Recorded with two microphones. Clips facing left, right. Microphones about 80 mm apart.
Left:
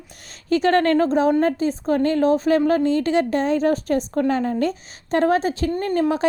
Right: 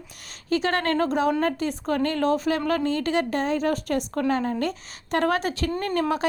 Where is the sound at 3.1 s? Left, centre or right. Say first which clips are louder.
Left 5 dB; left.